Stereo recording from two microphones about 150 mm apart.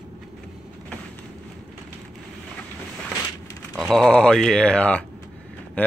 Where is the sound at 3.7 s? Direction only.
Centre (ahead or behind).